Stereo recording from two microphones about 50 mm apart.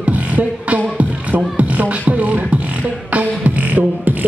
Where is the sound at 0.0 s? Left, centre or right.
Right.